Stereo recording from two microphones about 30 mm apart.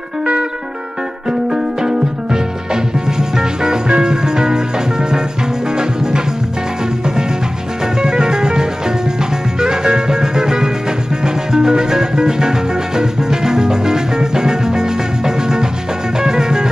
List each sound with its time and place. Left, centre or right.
1.5 s music: right
7.8 s music: right